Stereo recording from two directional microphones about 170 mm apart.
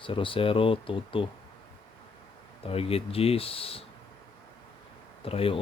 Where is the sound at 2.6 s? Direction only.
35° left (ahead or behind).